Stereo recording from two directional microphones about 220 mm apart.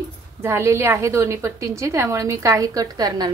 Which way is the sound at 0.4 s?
10° right (ahead or behind).